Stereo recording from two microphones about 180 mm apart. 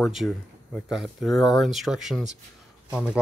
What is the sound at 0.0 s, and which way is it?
Speech, centre (ahead or behind).